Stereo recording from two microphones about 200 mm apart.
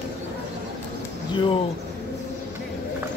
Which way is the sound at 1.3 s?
25° left (ahead or behind).